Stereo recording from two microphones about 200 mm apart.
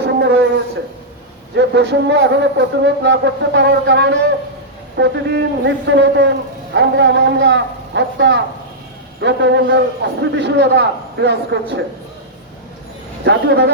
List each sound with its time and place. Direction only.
0.2 s a sound: 60° right (ahead or behind)
1.5 s speech: 60° right (ahead or behind)
13.2 s speech: 60° right (ahead or behind)